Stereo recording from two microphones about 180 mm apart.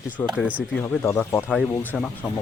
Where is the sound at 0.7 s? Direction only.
10° left (ahead or behind).